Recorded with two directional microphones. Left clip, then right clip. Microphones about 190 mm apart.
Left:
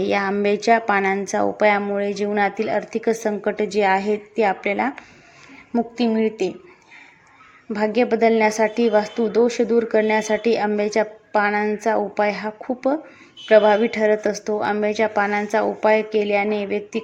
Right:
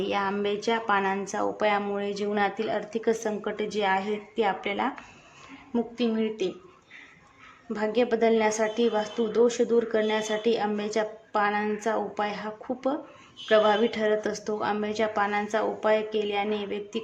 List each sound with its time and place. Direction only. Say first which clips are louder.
0.0 s a woman's voice: left 7 dB; 20° left (ahead or behind)
6.2 s a woman's voice: left 7 dB; 20° left (ahead or behind)
7.7 s a woman's voice: left 6 dB; 20° left (ahead or behind)